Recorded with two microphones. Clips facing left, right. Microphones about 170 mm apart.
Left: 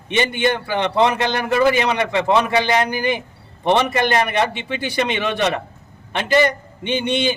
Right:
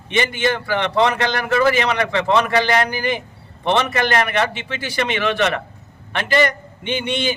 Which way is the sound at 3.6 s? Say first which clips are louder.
Left 2 dB; 10° left (ahead or behind).